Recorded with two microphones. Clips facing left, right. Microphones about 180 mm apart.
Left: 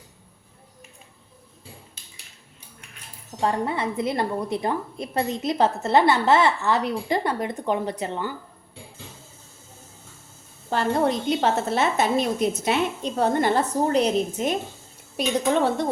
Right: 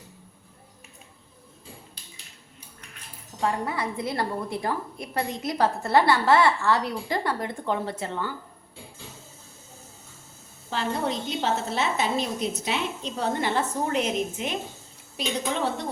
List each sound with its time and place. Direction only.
3.4 s a woman's voice: 25° left (ahead or behind)
10.7 s a woman's voice: 50° left (ahead or behind)
15.1 s a woman's voice: 55° left (ahead or behind)